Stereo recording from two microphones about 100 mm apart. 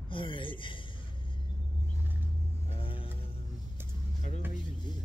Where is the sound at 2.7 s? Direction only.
65° left (ahead or behind).